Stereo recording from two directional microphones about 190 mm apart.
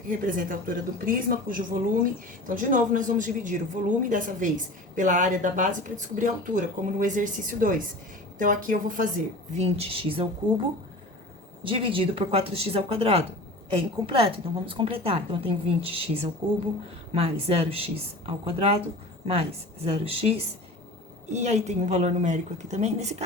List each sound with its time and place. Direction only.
0.1 s speech: 45° right (ahead or behind); by 10.2 s 30° right (ahead or behind)
11.6 s a woman's voice: 30° right (ahead or behind)
21.3 s speech: 40° right (ahead or behind)